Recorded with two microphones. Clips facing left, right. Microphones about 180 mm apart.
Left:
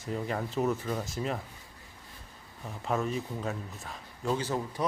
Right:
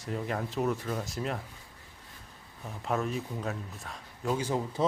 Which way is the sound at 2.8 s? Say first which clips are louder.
Even; centre (ahead or behind).